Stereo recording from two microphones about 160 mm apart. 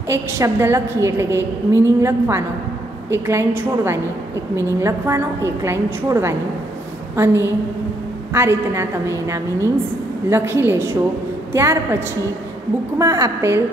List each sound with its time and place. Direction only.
0.1 s a woman's voice: 15° right (ahead or behind)
10.3 s a woman's voice: 15° right (ahead or behind)
13.0 s a woman's voice: 20° right (ahead or behind)